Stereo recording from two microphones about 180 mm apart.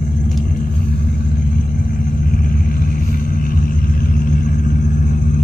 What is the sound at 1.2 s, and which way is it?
Vehicle, 55° left (ahead or behind).